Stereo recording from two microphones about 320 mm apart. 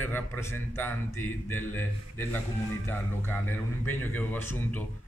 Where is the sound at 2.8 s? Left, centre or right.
Centre.